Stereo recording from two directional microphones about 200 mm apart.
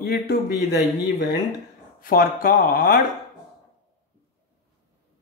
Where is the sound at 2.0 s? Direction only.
45° left (ahead or behind).